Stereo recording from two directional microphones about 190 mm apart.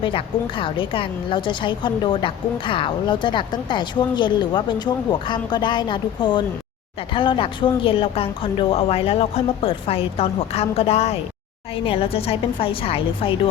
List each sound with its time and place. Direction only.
0.0 s a woman's voice: 25° left (ahead or behind)